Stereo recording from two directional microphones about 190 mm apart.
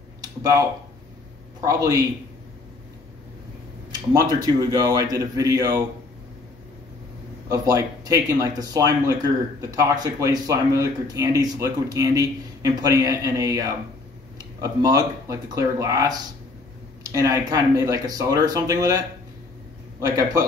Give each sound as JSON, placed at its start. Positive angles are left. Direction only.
{"t": 0.2, "sound": "a sound", "side_deg": -20}
{"t": 1.6, "sound": "speech", "side_deg": -15}
{"t": 4.1, "sound": "speech", "side_deg": -20}
{"t": 7.4, "sound": "speech", "side_deg": -20}